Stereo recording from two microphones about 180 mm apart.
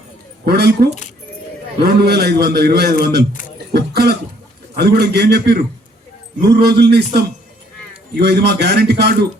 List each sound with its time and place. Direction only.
0.4 s a man's voice: 65° right (ahead or behind)
3.7 s cough: 65° right (ahead or behind)
4.8 s a man's voice: 65° right (ahead or behind)